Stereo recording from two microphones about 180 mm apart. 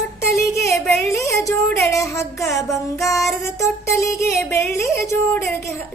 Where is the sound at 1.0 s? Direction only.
15° left (ahead or behind).